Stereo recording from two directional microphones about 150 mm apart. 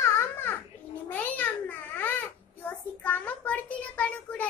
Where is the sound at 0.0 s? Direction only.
15° left (ahead or behind).